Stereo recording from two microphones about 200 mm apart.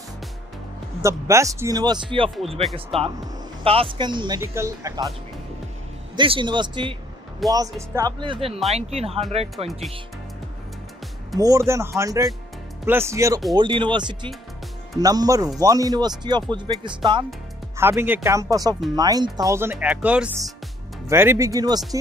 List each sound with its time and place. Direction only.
1.0 s speech: 15° right (ahead or behind)
6.1 s speech: 25° right (ahead or behind)
11.3 s speech: 15° right (ahead or behind)
17.7 s speech: 10° right (ahead or behind)